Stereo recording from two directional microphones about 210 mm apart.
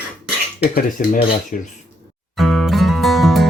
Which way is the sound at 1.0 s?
40° left (ahead or behind).